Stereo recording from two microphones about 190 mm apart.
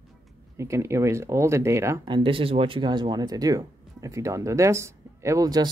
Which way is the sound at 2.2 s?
30° right (ahead or behind).